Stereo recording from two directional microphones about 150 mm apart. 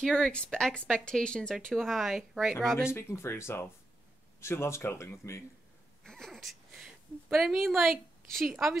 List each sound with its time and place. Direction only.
0.0 s speech: 5° left (ahead or behind)
2.9 s speech: 15° left (ahead or behind)
6.0 s a sound: centre (ahead or behind)
8.3 s speech: centre (ahead or behind)